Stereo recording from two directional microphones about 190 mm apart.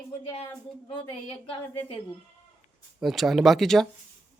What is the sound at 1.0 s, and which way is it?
Speech, 25° left (ahead or behind).